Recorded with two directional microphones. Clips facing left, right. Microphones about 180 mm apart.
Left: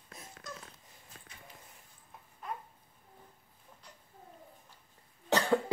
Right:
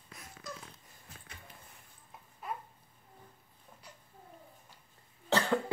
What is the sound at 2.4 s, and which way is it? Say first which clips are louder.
Babbling: right 1 dB; 5° right (ahead or behind).